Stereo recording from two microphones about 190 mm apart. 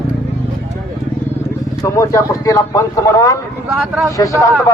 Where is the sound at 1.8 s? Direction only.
15° left (ahead or behind).